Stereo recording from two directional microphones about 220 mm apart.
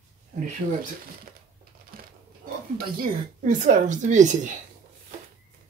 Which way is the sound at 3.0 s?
35° right (ahead or behind).